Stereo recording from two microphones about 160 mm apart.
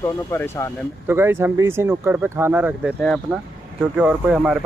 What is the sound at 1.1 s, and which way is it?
Speech, 15° right (ahead or behind).